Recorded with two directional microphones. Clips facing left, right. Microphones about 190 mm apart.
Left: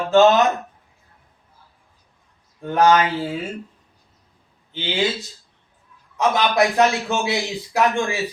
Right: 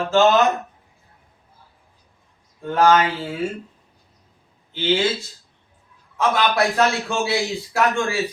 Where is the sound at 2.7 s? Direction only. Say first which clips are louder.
Even; 20° left (ahead or behind).